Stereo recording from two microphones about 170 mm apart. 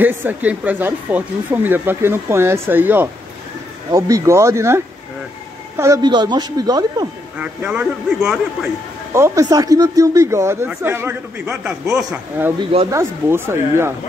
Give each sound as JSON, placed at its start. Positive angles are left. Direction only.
{"t": 0.0, "sound": "speech", "side_deg": -10}
{"t": 7.3, "sound": "speech", "side_deg": -5}
{"t": 9.1, "sound": "speech", "side_deg": -15}